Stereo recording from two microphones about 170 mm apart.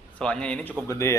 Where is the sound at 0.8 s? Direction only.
15° left (ahead or behind).